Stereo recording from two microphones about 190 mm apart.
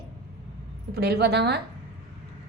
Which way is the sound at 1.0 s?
60° right (ahead or behind).